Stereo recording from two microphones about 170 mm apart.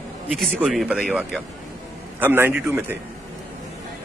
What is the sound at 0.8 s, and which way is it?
Speech, 5° right (ahead or behind).